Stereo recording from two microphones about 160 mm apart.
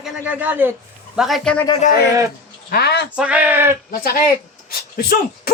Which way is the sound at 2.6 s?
85° left.